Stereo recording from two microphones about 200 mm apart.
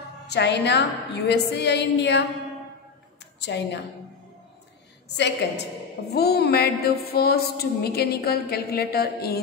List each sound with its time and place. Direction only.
0.3 s a woman's voice: 55° left (ahead or behind)
3.3 s a woman's voice: 60° left (ahead or behind)
5.1 s a woman's voice: 60° left (ahead or behind)